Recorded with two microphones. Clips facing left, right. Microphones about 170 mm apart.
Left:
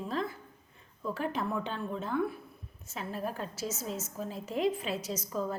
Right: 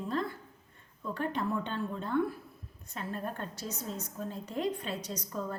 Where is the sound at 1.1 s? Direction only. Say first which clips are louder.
Right 1 dB; 5° left (ahead or behind).